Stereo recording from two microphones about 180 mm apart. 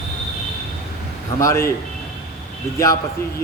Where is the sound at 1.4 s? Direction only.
15° left (ahead or behind).